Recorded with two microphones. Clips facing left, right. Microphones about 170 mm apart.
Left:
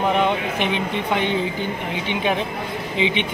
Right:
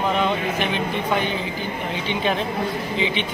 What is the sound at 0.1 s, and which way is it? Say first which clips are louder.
Speech: left 2 dB; 20° left (ahead or behind).